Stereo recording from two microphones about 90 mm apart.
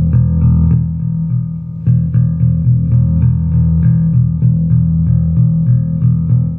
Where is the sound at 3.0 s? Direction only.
15° right (ahead or behind).